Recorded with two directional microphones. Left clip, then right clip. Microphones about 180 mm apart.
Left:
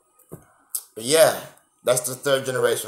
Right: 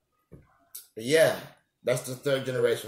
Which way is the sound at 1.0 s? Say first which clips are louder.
Left 5 dB; 45° left (ahead or behind).